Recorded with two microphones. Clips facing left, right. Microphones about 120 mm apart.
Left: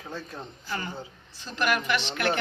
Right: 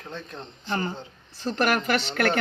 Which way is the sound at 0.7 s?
35° right (ahead or behind).